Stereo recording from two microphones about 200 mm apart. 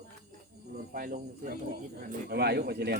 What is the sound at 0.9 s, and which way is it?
A man's voice, 45° right (ahead or behind).